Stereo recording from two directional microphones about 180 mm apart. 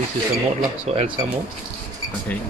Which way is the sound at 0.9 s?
35° right (ahead or behind).